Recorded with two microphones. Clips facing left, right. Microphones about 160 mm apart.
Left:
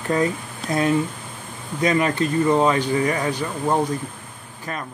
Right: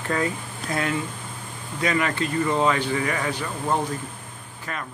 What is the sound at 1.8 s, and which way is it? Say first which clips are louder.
Speech: left 4 dB; 30° left (ahead or behind).